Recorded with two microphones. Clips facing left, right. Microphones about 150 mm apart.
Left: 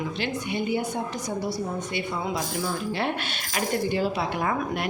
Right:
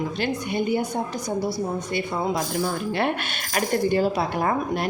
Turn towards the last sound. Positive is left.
turn(degrees=-40)  # may be behind; listen again after turning